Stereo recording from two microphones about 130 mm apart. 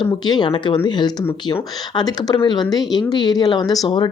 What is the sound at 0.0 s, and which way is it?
Speech, 35° left (ahead or behind).